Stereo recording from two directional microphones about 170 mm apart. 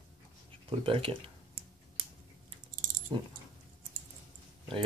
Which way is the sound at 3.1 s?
30° right (ahead or behind).